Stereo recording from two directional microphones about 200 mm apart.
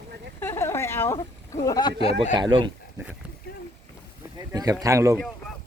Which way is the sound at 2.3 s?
25° right (ahead or behind).